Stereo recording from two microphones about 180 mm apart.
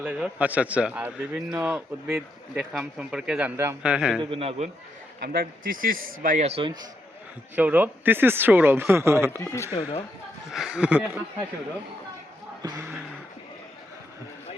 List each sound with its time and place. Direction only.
0.0 s a man's voice: 10° right (ahead or behind)
4.2 s a man's voice: 30° right (ahead or behind)
5.2 s a man's voice: 55° right (ahead or behind)
6.2 s a man's voice: 40° right (ahead or behind)
7.5 s a man's voice: 10° right (ahead or behind)
9.4 s speech: 20° left (ahead or behind)
10.5 s speech: 5° right (ahead or behind)
12.6 s speech: 20° right (ahead or behind)